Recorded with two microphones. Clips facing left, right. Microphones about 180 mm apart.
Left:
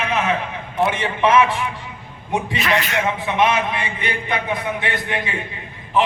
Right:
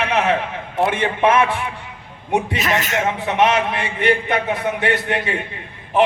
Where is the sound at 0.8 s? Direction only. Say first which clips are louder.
Right 2 dB; 60° right (ahead or behind).